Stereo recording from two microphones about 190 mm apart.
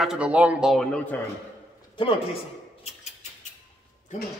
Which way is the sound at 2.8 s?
35° left (ahead or behind).